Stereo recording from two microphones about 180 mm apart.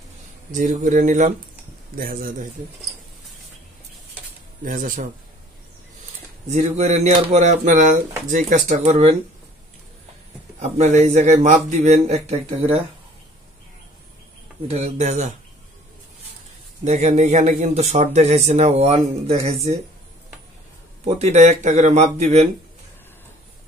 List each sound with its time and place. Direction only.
0.5 s speech: 45° right (ahead or behind)
4.6 s speech: 45° right (ahead or behind)
6.5 s speech: 40° right (ahead or behind)
10.6 s speech: 40° right (ahead or behind)
14.7 s speech: 35° right (ahead or behind)
16.8 s speech: 40° right (ahead or behind)
21.0 s speech: 35° right (ahead or behind)